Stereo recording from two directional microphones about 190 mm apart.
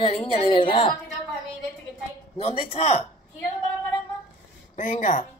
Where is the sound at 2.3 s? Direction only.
35° left (ahead or behind).